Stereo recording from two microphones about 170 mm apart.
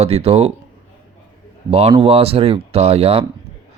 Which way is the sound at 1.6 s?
35° right (ahead or behind).